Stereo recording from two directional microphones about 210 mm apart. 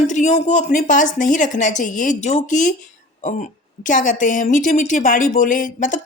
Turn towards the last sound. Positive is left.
turn(degrees=40)  # may be behind; listen again after turning